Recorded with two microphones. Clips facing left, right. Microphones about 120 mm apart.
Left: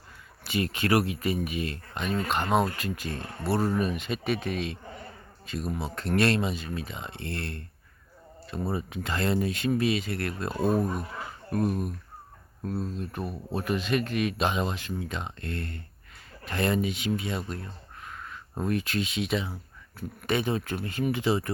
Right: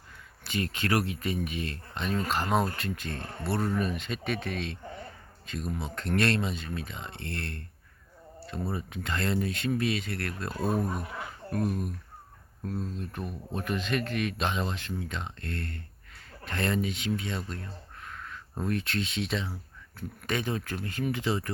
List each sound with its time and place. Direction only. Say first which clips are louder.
0.4 s speech: left 3 dB; 15° left (ahead or behind)
3.4 s speech: left 3 dB; 25° left (ahead or behind)
3.8 s speech: left 3 dB; 15° left (ahead or behind)
13.0 s speech: left 3 dB; 20° left (ahead or behind)